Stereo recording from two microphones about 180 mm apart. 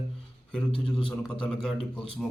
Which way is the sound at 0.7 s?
30° left (ahead or behind).